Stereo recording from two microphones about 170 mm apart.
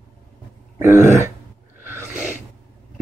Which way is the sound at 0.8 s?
15° right (ahead or behind).